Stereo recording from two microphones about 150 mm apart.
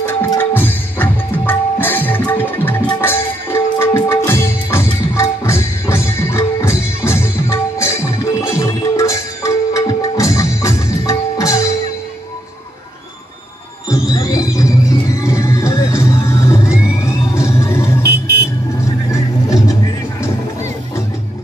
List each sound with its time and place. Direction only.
0.0 s music: 15° left (ahead or behind)
13.8 s music: 20° left (ahead or behind)
18.0 s vehicle: 90° right